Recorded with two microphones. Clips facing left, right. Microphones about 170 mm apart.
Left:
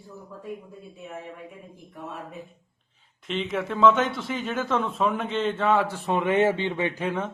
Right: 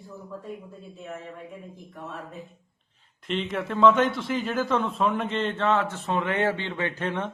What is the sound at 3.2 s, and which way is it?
A man's voice, centre (ahead or behind).